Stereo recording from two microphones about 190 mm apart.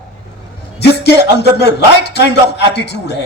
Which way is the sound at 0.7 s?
60° left (ahead or behind).